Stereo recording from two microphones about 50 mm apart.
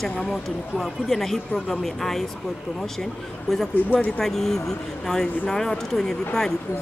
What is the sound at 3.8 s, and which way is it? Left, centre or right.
Speech, left.